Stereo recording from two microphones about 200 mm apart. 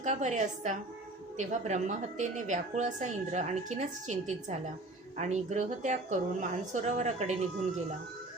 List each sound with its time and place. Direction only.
0.0 s a woman's voice: 35° right (ahead or behind)